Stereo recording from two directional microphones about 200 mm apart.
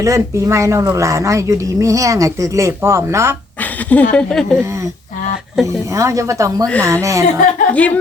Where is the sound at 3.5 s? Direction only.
10° left (ahead or behind).